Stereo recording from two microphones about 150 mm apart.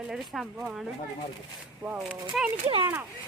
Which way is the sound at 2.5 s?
35° right (ahead or behind).